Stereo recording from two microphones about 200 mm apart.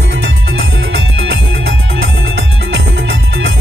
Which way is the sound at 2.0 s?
55° right (ahead or behind).